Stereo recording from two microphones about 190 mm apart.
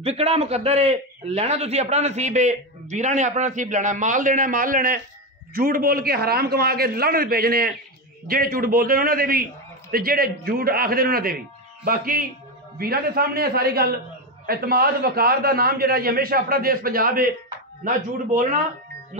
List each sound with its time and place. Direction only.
0.0 s a man's voice: 30° right (ahead or behind)